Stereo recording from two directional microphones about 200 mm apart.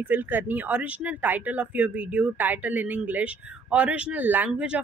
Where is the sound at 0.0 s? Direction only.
10° right (ahead or behind).